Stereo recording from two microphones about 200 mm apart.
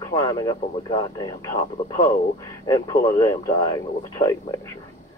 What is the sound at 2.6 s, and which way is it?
Speech, 20° left (ahead or behind).